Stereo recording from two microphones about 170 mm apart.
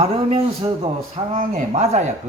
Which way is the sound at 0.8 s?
35° right (ahead or behind).